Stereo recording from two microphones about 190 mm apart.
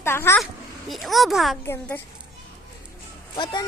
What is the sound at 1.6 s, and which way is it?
Speech, 15° left (ahead or behind).